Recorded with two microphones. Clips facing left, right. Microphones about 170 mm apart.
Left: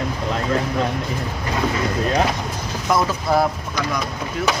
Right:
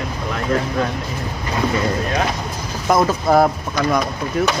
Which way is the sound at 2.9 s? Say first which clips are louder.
Right 4 dB; 50° right (ahead or behind).